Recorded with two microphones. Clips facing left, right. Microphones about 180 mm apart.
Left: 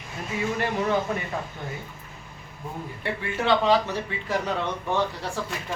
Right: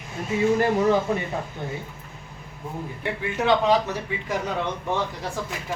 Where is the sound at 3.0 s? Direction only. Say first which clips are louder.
Right 2 dB; 15° right (ahead or behind).